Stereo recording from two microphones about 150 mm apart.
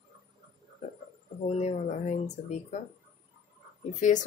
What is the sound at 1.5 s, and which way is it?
Speech, 50° left (ahead or behind).